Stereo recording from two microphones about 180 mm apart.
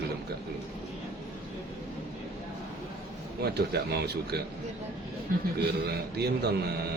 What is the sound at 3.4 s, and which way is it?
Speech, 60° right (ahead or behind).